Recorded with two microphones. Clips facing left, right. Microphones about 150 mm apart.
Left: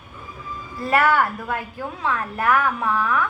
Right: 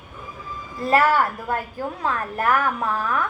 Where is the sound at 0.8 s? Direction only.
35° right (ahead or behind).